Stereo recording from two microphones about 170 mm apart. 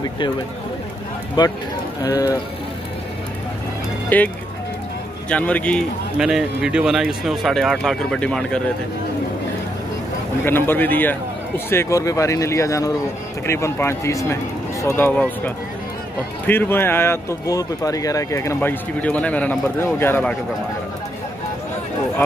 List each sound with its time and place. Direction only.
1.4 s speech: 25° left (ahead or behind)
4.1 s speech: 10° left (ahead or behind)
5.3 s speech: 5° left (ahead or behind)
6.1 s speech: 5° right (ahead or behind)
10.4 s speech: 10° left (ahead or behind)